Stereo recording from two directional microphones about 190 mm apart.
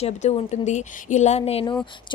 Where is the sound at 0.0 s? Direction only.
35° left (ahead or behind).